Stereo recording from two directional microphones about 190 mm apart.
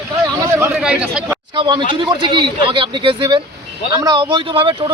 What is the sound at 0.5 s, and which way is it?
Speech, 5° right (ahead or behind).